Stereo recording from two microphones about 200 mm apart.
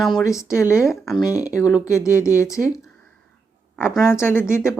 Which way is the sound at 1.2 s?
15° left (ahead or behind).